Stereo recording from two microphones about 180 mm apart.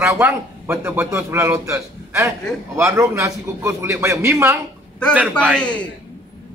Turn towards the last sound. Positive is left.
turn(degrees=5)  # may be behind; listen again after turning